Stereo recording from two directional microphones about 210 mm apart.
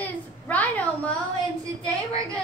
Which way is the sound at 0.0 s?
5° left (ahead or behind).